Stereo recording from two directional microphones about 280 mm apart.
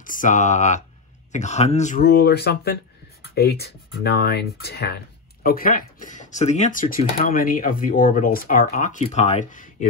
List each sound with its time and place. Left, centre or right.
0.0 s speech: left